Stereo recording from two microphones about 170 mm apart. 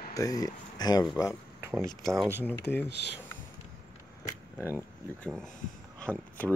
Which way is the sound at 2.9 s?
85° left.